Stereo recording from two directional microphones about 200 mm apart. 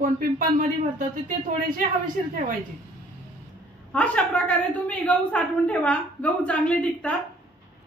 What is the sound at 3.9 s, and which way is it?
A woman's voice, 5° left (ahead or behind).